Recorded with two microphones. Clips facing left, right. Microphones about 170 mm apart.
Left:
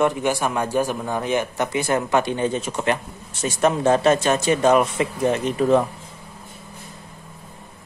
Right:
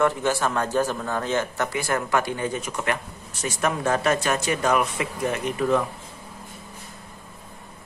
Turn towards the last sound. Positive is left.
turn(degrees=30)  # may be behind; listen again after turning